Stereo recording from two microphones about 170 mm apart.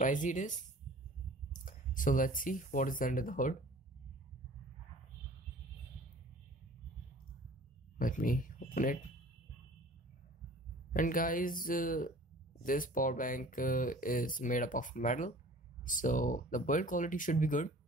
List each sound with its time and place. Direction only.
0.0 s speech: 50° left (ahead or behind)
8.0 s speech: 55° left (ahead or behind)
10.9 s speech: 55° left (ahead or behind)